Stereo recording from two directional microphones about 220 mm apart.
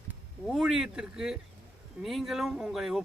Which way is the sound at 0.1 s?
Centre (ahead or behind).